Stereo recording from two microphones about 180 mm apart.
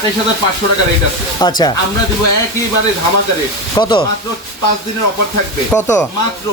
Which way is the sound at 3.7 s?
25° left (ahead or behind).